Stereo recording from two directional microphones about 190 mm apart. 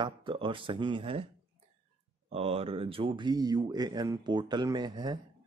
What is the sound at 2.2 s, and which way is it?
Speech, 30° right (ahead or behind).